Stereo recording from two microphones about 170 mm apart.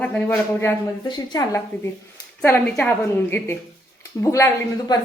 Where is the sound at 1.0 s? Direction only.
25° left (ahead or behind).